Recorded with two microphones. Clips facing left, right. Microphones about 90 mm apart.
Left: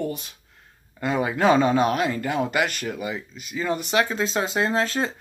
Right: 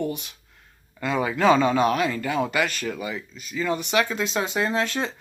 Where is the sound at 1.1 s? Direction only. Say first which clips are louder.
Left 1 dB; 15° left (ahead or behind).